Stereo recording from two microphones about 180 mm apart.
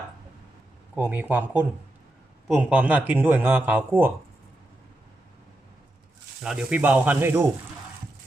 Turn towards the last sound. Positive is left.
turn(degrees=-10)  # may be behind; listen again after turning